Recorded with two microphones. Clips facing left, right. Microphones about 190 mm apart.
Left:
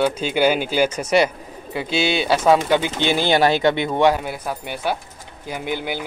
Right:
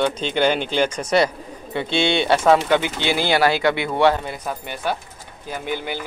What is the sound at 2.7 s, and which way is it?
Speech, 15° left (ahead or behind).